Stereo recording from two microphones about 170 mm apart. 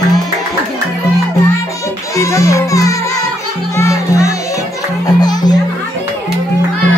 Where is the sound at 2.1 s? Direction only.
20° left (ahead or behind).